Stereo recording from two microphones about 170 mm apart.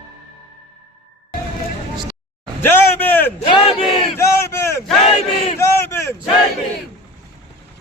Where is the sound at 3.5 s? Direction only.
30° left (ahead or behind).